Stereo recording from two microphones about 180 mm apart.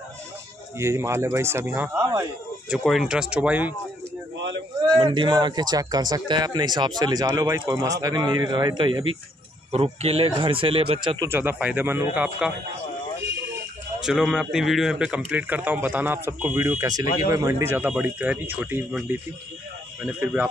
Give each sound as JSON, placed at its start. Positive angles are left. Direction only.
{"t": 0.7, "sound": "a man's voice", "side_deg": -15}
{"t": 2.7, "sound": "speech", "side_deg": 0}
{"t": 4.9, "sound": "speech", "side_deg": -25}
{"t": 11.1, "sound": "a man's voice", "side_deg": -10}
{"t": 14.0, "sound": "a man's voice", "side_deg": 0}